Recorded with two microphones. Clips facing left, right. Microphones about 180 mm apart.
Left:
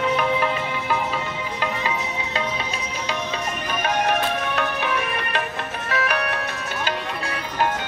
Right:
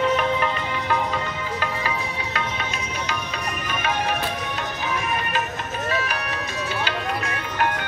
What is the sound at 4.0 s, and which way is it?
Music, 65° left (ahead or behind).